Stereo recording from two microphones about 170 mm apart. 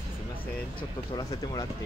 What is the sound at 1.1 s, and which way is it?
Speech, 25° left (ahead or behind).